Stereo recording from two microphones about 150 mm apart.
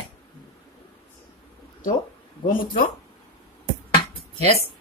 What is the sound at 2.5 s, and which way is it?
Speech, 65° left (ahead or behind).